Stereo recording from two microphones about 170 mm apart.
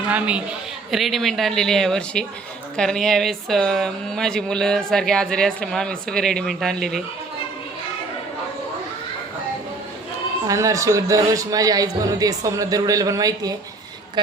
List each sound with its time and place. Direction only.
0.1 s a woman's voice: 5° right (ahead or behind)
10.4 s speech: 20° right (ahead or behind)